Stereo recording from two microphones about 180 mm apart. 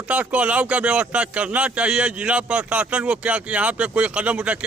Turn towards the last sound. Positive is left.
turn(degrees=-5)  # may be behind; listen again after turning